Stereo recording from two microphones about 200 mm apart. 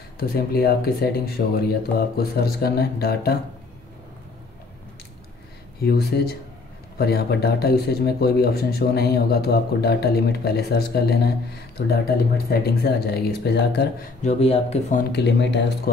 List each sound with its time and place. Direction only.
0.2 s speech: 50° left (ahead or behind)
5.8 s speech: 50° left (ahead or behind)
14.2 s speech: 30° left (ahead or behind)
15.1 s speech: 60° left (ahead or behind)